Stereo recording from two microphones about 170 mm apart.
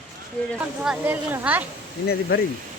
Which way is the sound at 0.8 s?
10° right (ahead or behind).